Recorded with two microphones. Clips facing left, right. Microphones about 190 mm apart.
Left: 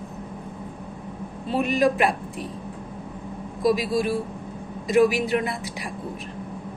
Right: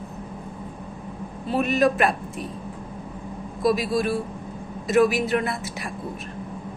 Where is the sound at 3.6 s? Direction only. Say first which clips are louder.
Even; 15° left (ahead or behind).